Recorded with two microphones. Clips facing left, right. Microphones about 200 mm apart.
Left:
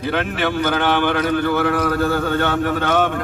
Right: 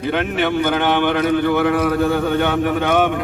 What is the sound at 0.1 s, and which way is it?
A man's voice, 20° right (ahead or behind).